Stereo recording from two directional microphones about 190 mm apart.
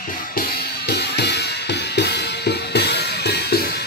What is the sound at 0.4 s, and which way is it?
Drum kit, 55° left (ahead or behind).